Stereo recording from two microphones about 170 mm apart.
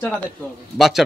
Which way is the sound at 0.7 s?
Centre (ahead or behind).